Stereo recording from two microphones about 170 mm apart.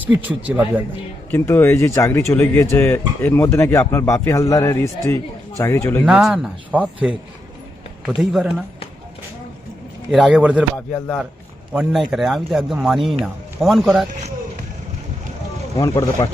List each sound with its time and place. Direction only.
0.0 s speech: 10° right (ahead or behind)
1.3 s speech: 15° left (ahead or behind)
6.1 s speech: 5° right (ahead or behind)
8.2 s speech: centre (ahead or behind)
10.1 s speech: 5° right (ahead or behind)
10.8 s speech: 10° left (ahead or behind)
11.7 s speech: 5° right (ahead or behind)
15.8 s speech: 20° left (ahead or behind)